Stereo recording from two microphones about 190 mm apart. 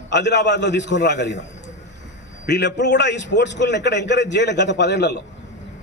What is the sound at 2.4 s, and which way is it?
A man's voice, 65° left (ahead or behind).